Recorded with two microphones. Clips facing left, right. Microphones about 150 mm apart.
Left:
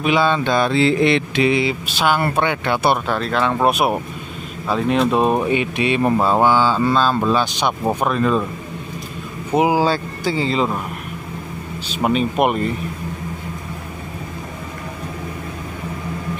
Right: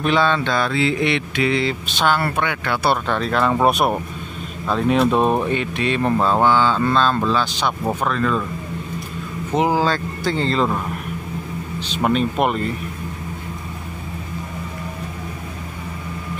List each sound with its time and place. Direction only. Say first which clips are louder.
0.0 s speech: left 1 dB; 10° left (ahead or behind)
0.7 s mantra: left 4 dB; 35° left (ahead or behind)
1.4 s speech: even; 15° left (ahead or behind)
2.2 s speech: left 3 dB; 25° left (ahead or behind)
3.1 s speech: even; centre (ahead or behind); by 8.5 s 20° left (ahead or behind)
9.5 s speech: left 2 dB; 10° left (ahead or behind)
11.9 s speech: left 1 dB; 5° left (ahead or behind)